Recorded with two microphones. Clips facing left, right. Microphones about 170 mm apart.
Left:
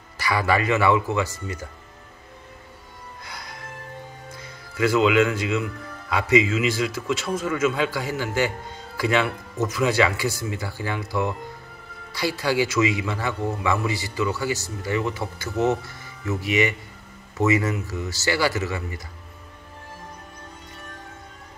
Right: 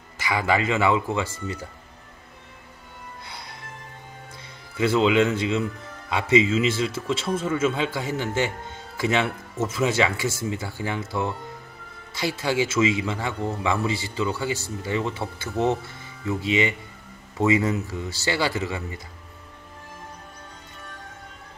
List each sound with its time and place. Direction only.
0.2 s speech: 20° right (ahead or behind)
3.3 s music: 25° right (ahead or behind)
4.4 s speech: 25° right (ahead or behind)